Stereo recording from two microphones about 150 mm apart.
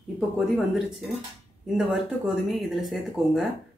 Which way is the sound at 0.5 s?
Centre (ahead or behind).